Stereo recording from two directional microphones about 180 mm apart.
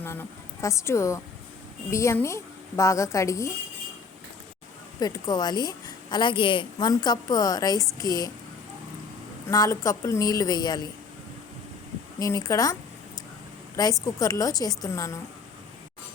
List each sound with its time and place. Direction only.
0.0 s a woman's voice: 15° left (ahead or behind)
4.9 s a woman's voice: 20° left (ahead or behind)
9.5 s a woman's voice: 20° left (ahead or behind)
12.2 s a woman's voice: 20° left (ahead or behind)
14.0 s a woman's voice: 20° left (ahead or behind)